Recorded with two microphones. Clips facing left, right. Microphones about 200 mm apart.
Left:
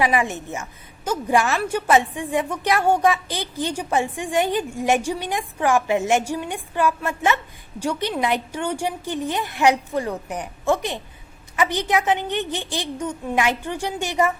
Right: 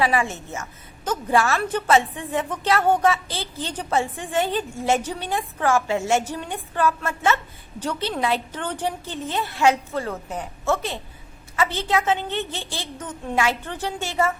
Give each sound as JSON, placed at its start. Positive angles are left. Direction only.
{"t": 0.0, "sound": "a woman's voice", "side_deg": 15}